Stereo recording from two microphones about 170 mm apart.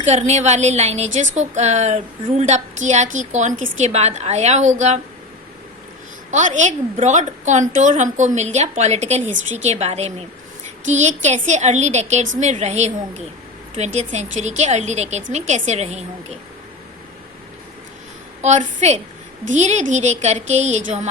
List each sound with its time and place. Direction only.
0.0 s a woman's voice: 40° right (ahead or behind)
6.3 s a woman's voice: 45° right (ahead or behind)
18.4 s a woman's voice: 40° right (ahead or behind)